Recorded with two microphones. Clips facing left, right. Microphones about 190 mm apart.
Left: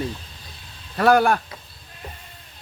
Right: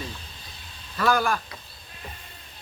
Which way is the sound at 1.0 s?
65° left (ahead or behind).